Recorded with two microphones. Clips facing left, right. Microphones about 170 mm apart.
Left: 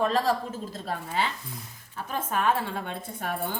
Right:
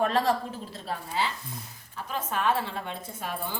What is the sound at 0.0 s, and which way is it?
Speech, 40° left (ahead or behind).